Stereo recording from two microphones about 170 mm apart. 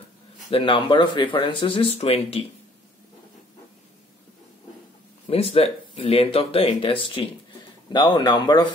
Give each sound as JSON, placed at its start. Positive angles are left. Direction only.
{"t": 0.5, "sound": "speech", "side_deg": 30}
{"t": 5.2, "sound": "speech", "side_deg": 35}